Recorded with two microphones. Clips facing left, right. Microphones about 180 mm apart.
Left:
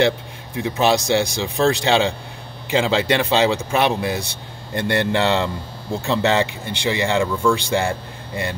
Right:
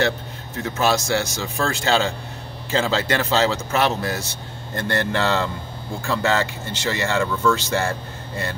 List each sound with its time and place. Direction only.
0.6 s speech: 15° left (ahead or behind)